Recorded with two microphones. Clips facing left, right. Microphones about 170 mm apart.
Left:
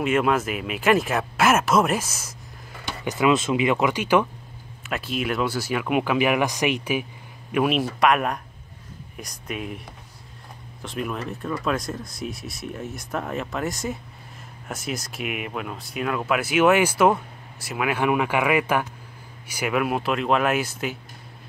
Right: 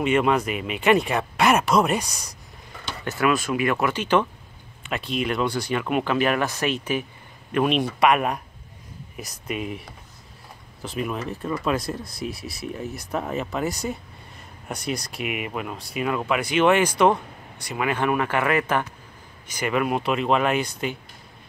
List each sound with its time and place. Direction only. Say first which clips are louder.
0.0 s speech: right 1 dB; centre (ahead or behind)
3.1 s speech: left 2 dB; 20° left (ahead or behind)